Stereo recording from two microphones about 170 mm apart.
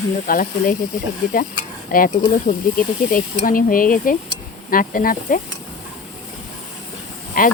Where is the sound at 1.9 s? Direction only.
55° left (ahead or behind).